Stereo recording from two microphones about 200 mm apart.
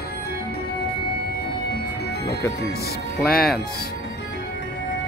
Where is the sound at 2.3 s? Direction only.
55° left (ahead or behind).